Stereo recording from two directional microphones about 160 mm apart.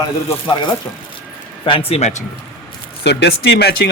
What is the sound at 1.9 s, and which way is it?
Speech, 45° left (ahead or behind).